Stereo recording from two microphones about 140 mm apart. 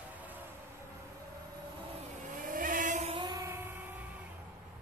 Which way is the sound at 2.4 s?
75° right (ahead or behind).